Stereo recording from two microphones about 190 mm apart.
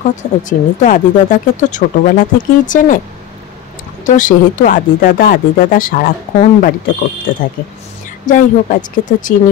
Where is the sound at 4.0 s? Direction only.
45° left (ahead or behind).